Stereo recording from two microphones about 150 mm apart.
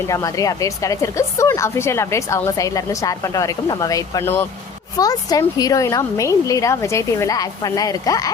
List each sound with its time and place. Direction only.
0.1 s speech: 20° left (ahead or behind)